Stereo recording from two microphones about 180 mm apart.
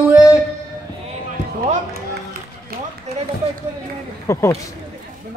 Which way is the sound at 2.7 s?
55° right (ahead or behind).